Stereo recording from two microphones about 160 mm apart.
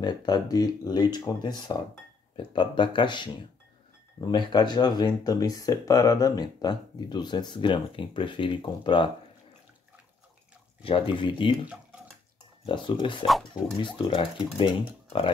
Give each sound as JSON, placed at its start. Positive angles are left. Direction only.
{"t": 0.0, "sound": "speech", "side_deg": 25}
{"t": 10.8, "sound": "speech", "side_deg": 30}
{"t": 12.6, "sound": "speech", "side_deg": 30}
{"t": 13.2, "sound": "speech", "side_deg": 0}
{"t": 14.0, "sound": "speech", "side_deg": 30}